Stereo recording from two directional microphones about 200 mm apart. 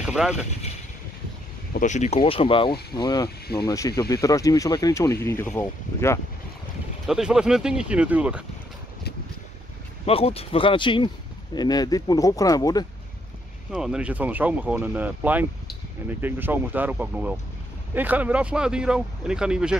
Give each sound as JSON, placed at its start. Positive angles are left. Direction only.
{"t": 0.0, "sound": "speech", "side_deg": -5}
{"t": 1.7, "sound": "speech", "side_deg": 40}
{"t": 7.1, "sound": "speech", "side_deg": -5}
{"t": 10.0, "sound": "speech", "side_deg": 30}
{"t": 13.7, "sound": "speech", "side_deg": -5}